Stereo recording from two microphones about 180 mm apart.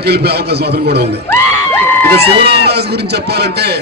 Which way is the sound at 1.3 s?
10° left (ahead or behind).